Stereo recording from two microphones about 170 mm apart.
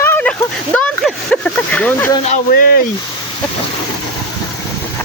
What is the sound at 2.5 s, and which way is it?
Speech, 60° left (ahead or behind).